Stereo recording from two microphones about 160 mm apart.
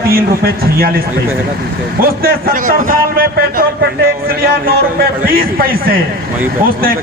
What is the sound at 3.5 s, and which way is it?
A man's voice, 75° right (ahead or behind).